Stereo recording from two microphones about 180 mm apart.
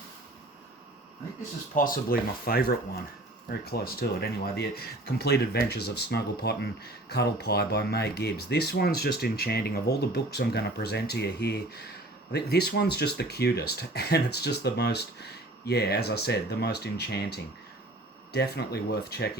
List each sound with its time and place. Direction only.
1.7 s speech: 50° left (ahead or behind)